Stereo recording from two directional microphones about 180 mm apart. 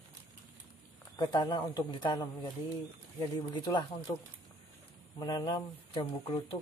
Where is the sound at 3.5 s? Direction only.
25° left (ahead or behind).